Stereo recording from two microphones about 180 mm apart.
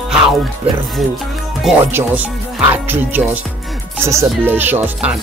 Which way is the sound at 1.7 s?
Centre (ahead or behind).